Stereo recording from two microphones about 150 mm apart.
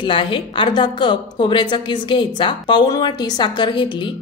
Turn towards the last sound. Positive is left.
turn(degrees=30)  # may be behind; listen again after turning